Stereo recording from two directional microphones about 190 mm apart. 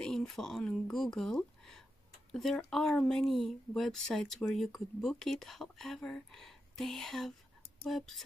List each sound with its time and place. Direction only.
0.0 s speech: 5° left (ahead or behind)